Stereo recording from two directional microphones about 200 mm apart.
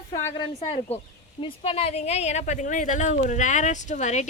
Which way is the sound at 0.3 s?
25° left (ahead or behind).